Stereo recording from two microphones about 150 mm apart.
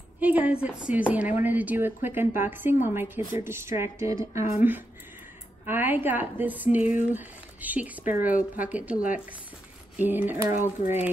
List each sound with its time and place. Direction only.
0.2 s speech: 10° right (ahead or behind)